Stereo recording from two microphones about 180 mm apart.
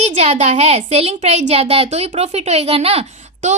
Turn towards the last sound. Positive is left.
turn(degrees=-40)  # may be behind; listen again after turning